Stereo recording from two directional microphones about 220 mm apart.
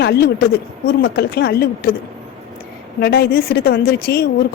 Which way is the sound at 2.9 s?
45° left (ahead or behind).